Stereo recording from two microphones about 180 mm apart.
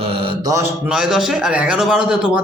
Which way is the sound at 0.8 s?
5° right (ahead or behind).